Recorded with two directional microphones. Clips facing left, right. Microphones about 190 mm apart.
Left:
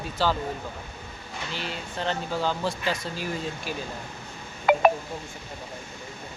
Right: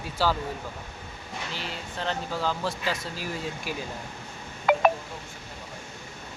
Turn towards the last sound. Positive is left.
turn(degrees=5)  # may be behind; listen again after turning